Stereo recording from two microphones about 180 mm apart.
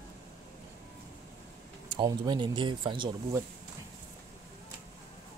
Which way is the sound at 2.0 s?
25° right (ahead or behind).